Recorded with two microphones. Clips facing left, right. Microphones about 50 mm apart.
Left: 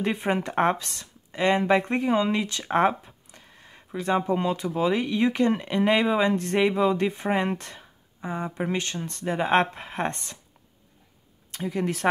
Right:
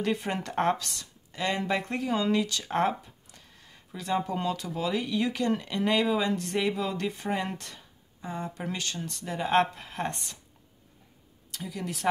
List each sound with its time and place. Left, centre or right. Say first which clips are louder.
0.0 s speech: left 4 dB; left
11.5 s speech: left 8 dB; left